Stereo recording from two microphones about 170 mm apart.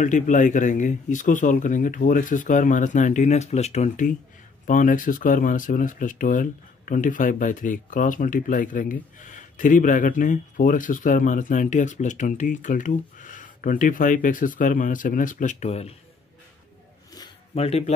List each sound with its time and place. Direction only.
0.0 s speech: 50° left (ahead or behind)
17.6 s speech: 35° left (ahead or behind)